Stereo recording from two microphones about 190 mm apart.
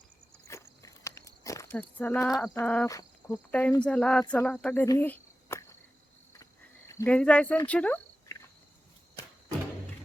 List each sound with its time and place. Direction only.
0.4 s walk: 15° left (ahead or behind)
2.6 s speech: 10° left (ahead or behind)
4.9 s cricket: 10° left (ahead or behind)